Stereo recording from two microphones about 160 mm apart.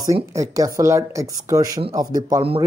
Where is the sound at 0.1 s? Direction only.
20° right (ahead or behind).